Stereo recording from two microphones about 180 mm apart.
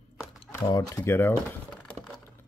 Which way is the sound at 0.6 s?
20° left (ahead or behind).